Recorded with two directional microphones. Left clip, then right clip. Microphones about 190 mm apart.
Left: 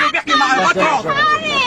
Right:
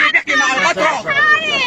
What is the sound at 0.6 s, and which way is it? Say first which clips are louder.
Speech: left 1 dB; 10° left (ahead or behind).